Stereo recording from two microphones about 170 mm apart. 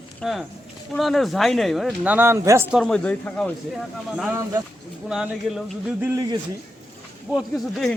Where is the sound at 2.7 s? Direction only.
Centre (ahead or behind).